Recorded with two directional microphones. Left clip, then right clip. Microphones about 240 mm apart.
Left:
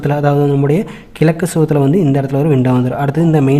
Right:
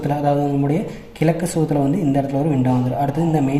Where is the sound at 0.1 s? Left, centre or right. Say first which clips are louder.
Left 5 dB; left.